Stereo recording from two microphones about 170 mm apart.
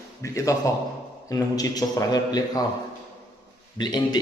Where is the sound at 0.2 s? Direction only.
20° left (ahead or behind).